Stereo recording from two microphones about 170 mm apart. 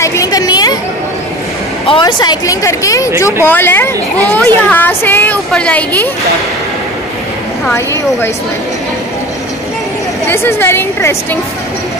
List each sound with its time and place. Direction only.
0.0 s a sound: 20° left (ahead or behind)
1.9 s a woman's voice: 25° left (ahead or behind); by 6.0 s 10° left (ahead or behind)
7.7 s speech: 15° left (ahead or behind)
10.2 s speech: 15° left (ahead or behind)